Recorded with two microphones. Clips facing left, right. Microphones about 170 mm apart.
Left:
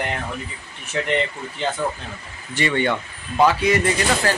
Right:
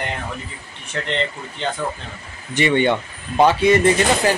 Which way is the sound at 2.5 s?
20° right (ahead or behind).